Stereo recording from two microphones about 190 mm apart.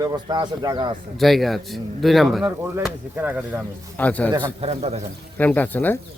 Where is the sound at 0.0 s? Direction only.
20° right (ahead or behind).